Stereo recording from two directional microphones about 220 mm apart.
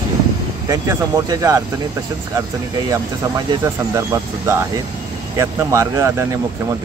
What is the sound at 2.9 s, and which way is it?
Speech, 15° right (ahead or behind).